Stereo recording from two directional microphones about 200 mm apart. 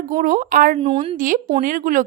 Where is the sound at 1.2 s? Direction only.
40° right (ahead or behind).